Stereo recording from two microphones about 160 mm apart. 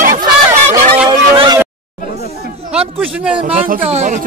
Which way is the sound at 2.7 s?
5° right (ahead or behind).